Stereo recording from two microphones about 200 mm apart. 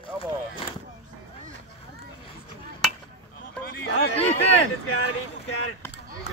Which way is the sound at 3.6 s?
55° left (ahead or behind).